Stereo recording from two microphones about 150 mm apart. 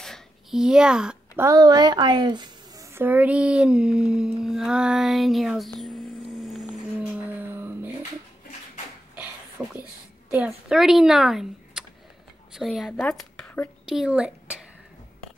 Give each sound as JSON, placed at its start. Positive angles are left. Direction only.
{"t": 0.0, "sound": "a sound", "side_deg": 0}
{"t": 1.4, "sound": "a woman's voice", "side_deg": -25}
{"t": 2.9, "sound": "speech", "side_deg": -15}
{"t": 7.2, "sound": "music", "side_deg": -15}
{"t": 9.6, "sound": "speech", "side_deg": -10}
{"t": 13.1, "sound": "a sound", "side_deg": 5}